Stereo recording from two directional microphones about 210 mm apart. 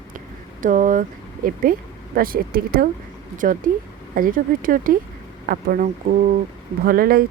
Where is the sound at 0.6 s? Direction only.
40° right (ahead or behind).